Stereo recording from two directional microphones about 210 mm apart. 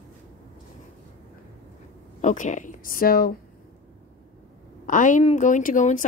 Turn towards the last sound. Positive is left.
turn(degrees=40)  # may be behind; listen again after turning